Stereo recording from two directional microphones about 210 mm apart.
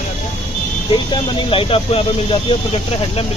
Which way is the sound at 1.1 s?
25° left (ahead or behind).